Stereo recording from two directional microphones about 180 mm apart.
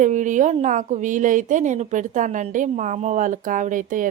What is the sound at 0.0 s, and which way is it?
A woman's voice, 45° right (ahead or behind).